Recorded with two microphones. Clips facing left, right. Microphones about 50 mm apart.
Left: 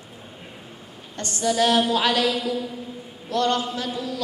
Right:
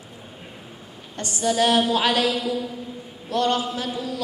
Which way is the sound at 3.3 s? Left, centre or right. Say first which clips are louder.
Even; centre.